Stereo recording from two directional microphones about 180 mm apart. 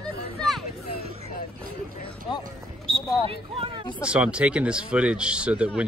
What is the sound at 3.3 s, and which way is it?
Speech, 30° right (ahead or behind).